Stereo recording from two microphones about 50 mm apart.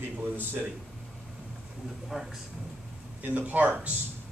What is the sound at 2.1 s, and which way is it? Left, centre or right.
Speech, centre.